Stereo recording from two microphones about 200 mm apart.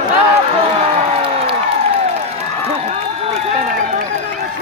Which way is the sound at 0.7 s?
30° right (ahead or behind).